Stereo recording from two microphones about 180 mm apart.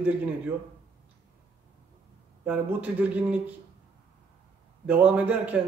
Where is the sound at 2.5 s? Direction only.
10° right (ahead or behind).